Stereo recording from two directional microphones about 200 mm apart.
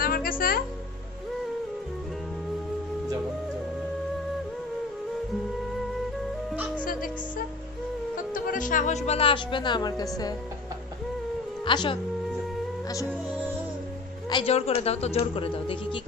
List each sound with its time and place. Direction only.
0.0 s music: 45° left (ahead or behind)
6.8 s music: 45° left (ahead or behind)
8.3 s speech: 40° left (ahead or behind); by 10.0 s 20° left (ahead or behind)
11.6 s a woman's voice: 25° left (ahead or behind)
14.3 s speech: 30° left (ahead or behind)